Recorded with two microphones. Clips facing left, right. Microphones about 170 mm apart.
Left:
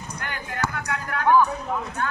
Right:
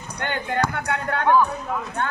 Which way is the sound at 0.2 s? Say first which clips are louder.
Right 6 dB; 30° right (ahead or behind).